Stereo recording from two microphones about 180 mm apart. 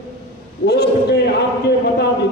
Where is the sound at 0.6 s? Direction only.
65° left (ahead or behind).